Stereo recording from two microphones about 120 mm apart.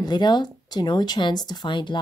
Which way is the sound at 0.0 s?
35° left (ahead or behind).